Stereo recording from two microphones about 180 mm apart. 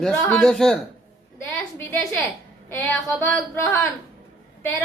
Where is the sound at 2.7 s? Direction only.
15° left (ahead or behind).